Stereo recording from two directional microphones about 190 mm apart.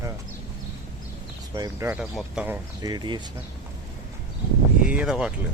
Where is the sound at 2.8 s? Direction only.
20° right (ahead or behind).